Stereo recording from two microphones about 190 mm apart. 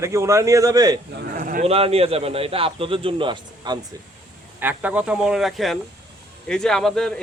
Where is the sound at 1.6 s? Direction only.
30° right (ahead or behind).